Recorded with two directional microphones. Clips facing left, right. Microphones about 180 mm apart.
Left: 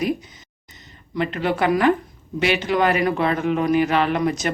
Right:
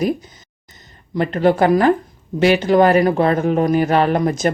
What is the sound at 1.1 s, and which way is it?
Speech, 40° right (ahead or behind).